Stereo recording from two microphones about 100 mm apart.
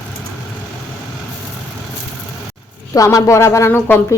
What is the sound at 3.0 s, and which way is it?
Speech, 35° left (ahead or behind).